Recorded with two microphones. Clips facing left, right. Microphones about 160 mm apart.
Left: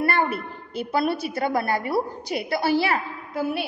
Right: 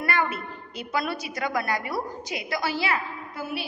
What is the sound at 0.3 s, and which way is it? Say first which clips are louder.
A woman's voice: left 4 dB; 55° left (ahead or behind).